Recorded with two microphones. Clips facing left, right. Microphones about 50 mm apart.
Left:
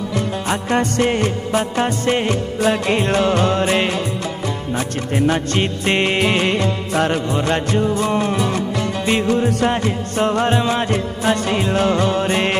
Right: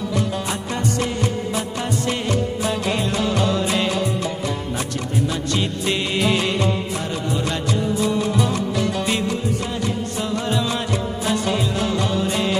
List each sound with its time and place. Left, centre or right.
0.5 s music: left
6.9 s music: left
7.3 s music: left
9.3 s music: left